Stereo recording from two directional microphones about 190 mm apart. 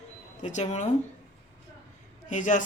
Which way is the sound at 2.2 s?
40° left (ahead or behind).